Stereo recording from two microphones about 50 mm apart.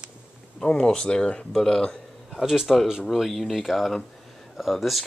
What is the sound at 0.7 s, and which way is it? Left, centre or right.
Speech, centre.